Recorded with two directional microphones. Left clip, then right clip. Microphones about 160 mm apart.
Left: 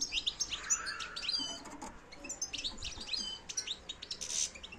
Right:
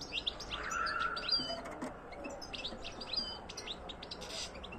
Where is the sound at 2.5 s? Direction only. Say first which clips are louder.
Left 2 dB; 5° right (ahead or behind).